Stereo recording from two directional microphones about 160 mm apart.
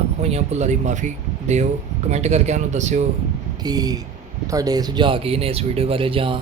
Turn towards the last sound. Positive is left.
turn(degrees=-35)  # may be behind; listen again after turning